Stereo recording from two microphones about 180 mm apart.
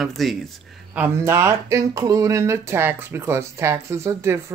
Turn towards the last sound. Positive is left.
turn(degrees=-15)  # may be behind; listen again after turning